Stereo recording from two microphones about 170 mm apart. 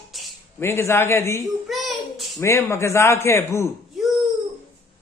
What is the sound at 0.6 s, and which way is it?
Speech, 15° left (ahead or behind).